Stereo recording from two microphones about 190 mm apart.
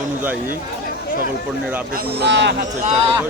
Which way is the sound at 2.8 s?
40° right (ahead or behind).